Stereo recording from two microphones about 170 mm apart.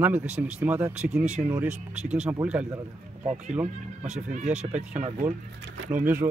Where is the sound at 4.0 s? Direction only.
45° right (ahead or behind).